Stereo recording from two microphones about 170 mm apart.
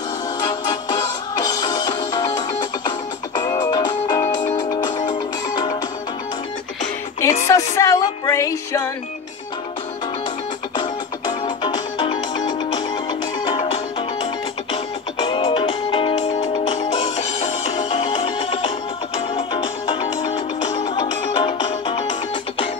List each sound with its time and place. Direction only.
0.4 s music: 25° left (ahead or behind)
4.4 s music: 45° left (ahead or behind)
7.4 s music: 20° left (ahead or behind)
11.2 s music: 25° left (ahead or behind)
13.6 s music: 30° left (ahead or behind)